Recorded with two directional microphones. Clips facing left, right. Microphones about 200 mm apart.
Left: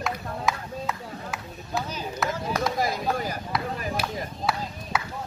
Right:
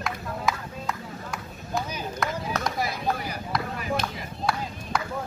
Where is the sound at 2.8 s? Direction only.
45° left (ahead or behind).